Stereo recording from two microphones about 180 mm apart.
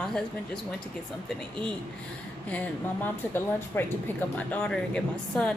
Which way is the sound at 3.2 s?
10° left (ahead or behind).